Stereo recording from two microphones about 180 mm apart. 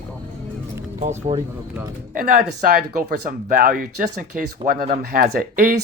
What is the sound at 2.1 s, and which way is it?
Speech, 55° right (ahead or behind).